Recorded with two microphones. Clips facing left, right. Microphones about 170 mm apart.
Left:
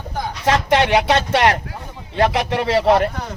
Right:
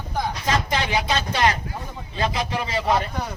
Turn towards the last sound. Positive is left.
turn(degrees=70)  # may be behind; listen again after turning